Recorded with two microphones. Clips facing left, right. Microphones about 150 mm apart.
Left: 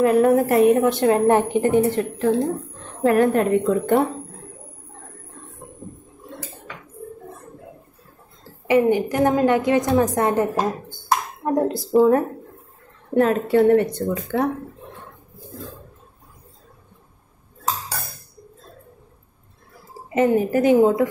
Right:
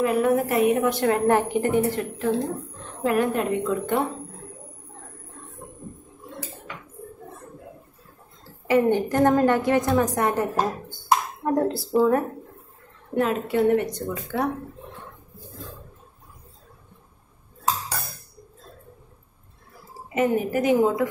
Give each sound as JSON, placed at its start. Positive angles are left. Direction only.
{"t": 0.0, "sound": "a woman's voice", "side_deg": 40}
{"t": 0.8, "sound": "a woman's voice", "side_deg": 25}
{"t": 3.0, "sound": "a woman's voice", "side_deg": 45}
{"t": 8.6, "sound": "a woman's voice", "side_deg": 15}
{"t": 13.1, "sound": "a woman's voice", "side_deg": 40}
{"t": 20.2, "sound": "a woman's voice", "side_deg": 35}